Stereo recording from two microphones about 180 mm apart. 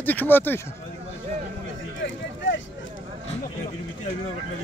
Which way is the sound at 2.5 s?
90° left.